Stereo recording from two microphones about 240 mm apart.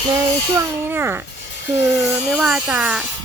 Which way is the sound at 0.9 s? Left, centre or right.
Centre.